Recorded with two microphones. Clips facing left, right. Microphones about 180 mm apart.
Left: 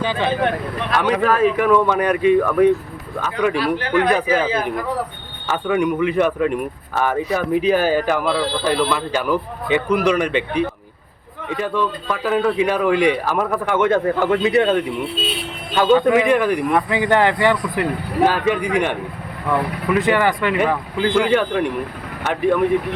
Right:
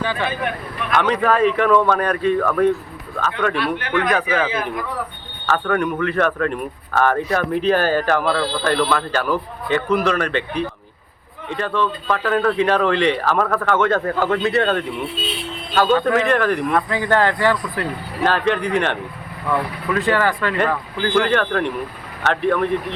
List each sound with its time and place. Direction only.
0.0 s speech: 20° left (ahead or behind)
1.2 s speech: 5° left (ahead or behind)
3.6 s speech: 35° left (ahead or behind)
5.6 s speech: 10° left (ahead or behind)